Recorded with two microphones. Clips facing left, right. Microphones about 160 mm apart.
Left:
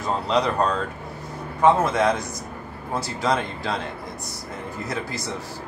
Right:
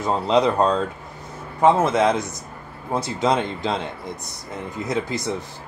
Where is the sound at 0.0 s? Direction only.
20° right (ahead or behind).